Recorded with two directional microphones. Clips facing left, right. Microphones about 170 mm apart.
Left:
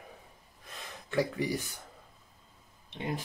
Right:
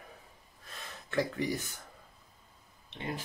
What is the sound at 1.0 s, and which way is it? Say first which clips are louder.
Speech: left 1 dB; 10° left (ahead or behind).